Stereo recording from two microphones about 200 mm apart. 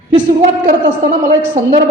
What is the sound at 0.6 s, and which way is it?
A woman's voice, 40° right (ahead or behind).